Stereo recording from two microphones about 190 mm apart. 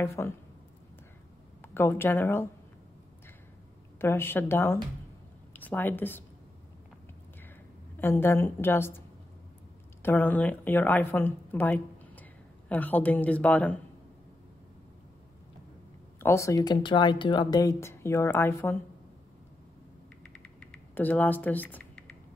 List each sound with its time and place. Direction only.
0.0 s speech: 15° left (ahead or behind)
1.6 s a woman's voice: 10° left (ahead or behind)
4.0 s speech: 10° left (ahead or behind)
8.0 s speech: 10° left (ahead or behind)
10.0 s a woman's voice: 10° left (ahead or behind)
16.2 s speech: 15° left (ahead or behind)
20.2 s typing: 5° left (ahead or behind)